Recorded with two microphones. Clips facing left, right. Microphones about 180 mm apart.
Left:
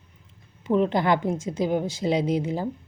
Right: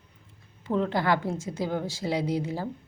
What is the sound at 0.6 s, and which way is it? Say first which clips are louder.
Speech: left 4 dB; 20° left (ahead or behind).